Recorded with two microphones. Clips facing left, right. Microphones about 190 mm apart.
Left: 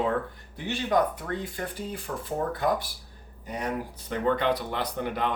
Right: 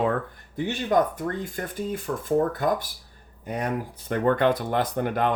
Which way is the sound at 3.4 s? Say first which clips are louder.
Right 3 dB; 55° right (ahead or behind).